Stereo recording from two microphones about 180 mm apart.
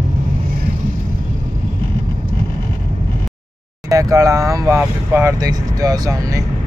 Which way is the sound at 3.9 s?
20° right (ahead or behind).